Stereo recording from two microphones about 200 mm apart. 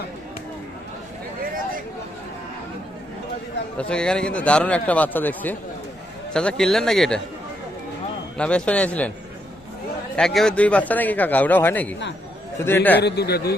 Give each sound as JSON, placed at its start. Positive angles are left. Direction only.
{"t": 3.8, "sound": "a man's voice", "side_deg": 5}
{"t": 8.4, "sound": "a man's voice", "side_deg": 5}
{"t": 10.2, "sound": "a man's voice", "side_deg": 5}
{"t": 13.0, "sound": "a man's voice", "side_deg": 55}